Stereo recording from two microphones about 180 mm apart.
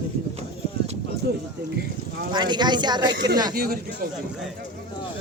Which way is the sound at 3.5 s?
55° right (ahead or behind).